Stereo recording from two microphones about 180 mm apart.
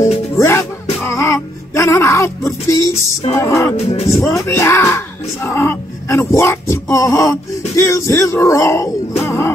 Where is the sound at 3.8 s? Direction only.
35° left (ahead or behind).